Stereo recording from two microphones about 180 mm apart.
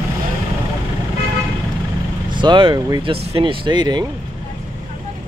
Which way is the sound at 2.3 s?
25° right (ahead or behind).